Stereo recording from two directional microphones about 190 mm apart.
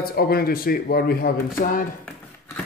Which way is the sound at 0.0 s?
50° left (ahead or behind).